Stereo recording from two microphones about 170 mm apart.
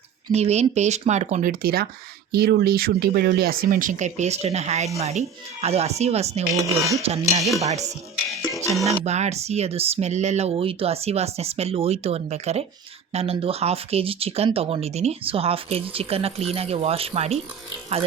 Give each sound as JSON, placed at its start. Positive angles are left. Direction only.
{"t": 0.3, "sound": "speech", "side_deg": -40}
{"t": 6.6, "sound": "speech", "side_deg": -20}
{"t": 7.0, "sound": "speech", "side_deg": -40}
{"t": 9.0, "sound": "speech", "side_deg": -40}